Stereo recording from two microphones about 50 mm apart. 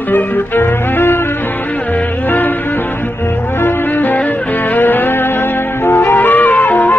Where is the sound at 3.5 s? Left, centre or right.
Left.